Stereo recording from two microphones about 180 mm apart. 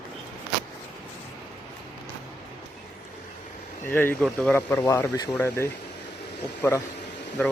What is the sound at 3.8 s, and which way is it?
Speech, 10° left (ahead or behind).